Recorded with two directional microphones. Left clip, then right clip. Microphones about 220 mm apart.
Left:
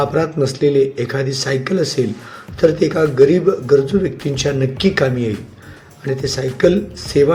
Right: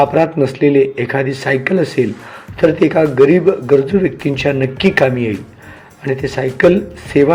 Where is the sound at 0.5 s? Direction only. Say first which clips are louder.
Even; 50° left (ahead or behind).